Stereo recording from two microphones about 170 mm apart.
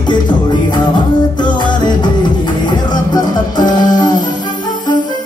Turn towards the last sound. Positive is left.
turn(degrees=25)  # may be behind; listen again after turning